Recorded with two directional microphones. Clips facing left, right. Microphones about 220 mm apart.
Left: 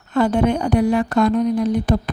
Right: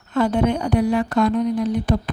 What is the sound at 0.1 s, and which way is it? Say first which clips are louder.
Speech: left 2 dB; 45° left (ahead or behind).